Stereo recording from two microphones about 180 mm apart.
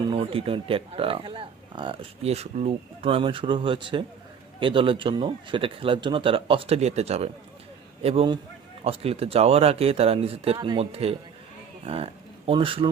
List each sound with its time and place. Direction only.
0.0 s speech: 30° right (ahead or behind)